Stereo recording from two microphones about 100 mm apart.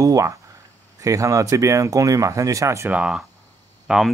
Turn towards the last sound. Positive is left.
turn(degrees=-5)  # may be behind; listen again after turning